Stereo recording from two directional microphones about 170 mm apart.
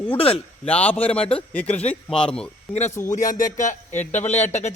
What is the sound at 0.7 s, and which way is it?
Speech, 10° left (ahead or behind).